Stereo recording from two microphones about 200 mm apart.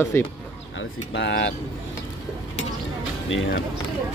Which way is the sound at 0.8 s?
65° left (ahead or behind).